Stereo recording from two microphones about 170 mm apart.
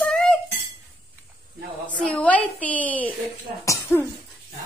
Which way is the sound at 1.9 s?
5° left (ahead or behind).